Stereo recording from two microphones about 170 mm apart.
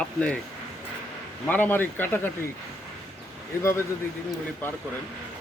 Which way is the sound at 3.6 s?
15° left (ahead or behind).